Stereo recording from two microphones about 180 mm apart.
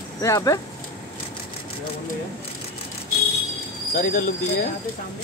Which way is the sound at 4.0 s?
45° left (ahead or behind).